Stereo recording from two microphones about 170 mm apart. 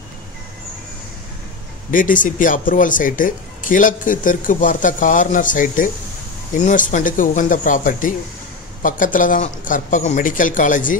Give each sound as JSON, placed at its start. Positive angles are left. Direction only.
{"t": 1.9, "sound": "speech", "side_deg": 50}